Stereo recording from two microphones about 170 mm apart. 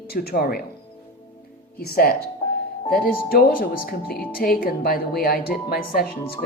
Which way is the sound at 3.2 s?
60° left (ahead or behind).